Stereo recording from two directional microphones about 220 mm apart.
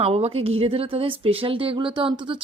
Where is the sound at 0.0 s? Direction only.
25° right (ahead or behind).